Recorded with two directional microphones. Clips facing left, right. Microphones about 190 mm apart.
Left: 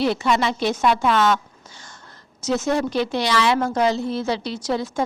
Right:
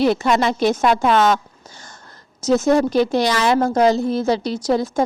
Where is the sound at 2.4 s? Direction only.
45° right (ahead or behind).